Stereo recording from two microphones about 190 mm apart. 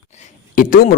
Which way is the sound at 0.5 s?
45° left (ahead or behind).